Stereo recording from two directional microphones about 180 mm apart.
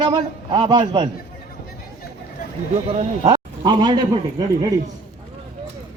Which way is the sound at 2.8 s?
35° right (ahead or behind).